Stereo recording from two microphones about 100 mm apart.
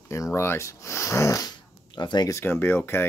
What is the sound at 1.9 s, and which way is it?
Speech, 50° left (ahead or behind).